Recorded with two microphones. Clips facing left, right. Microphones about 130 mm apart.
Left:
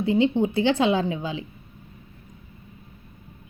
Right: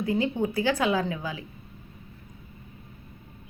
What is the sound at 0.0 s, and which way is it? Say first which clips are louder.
A woman's voice: left 5 dB; 25° left (ahead or behind).